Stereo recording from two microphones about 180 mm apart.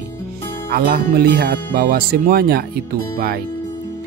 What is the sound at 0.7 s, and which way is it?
Speech, 60° right (ahead or behind).